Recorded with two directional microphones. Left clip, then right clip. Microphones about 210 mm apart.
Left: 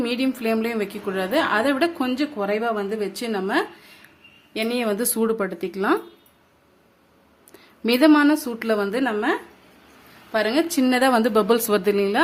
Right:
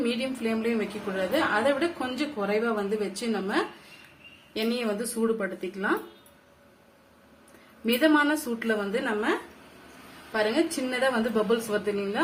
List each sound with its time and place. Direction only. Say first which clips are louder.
0.0 s a woman's voice: left 5 dB; 50° left (ahead or behind)
5.1 s speech: left 5 dB; 55° left (ahead or behind)
7.9 s a woman's voice: left 6 dB; 55° left (ahead or behind)
10.3 s a woman's voice: left 5 dB; 50° left (ahead or behind)